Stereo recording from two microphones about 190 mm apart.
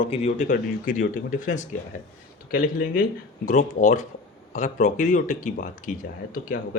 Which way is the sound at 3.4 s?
40° left (ahead or behind).